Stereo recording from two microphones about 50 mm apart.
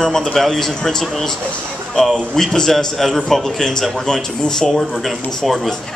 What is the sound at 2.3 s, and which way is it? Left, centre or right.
A man's voice, centre.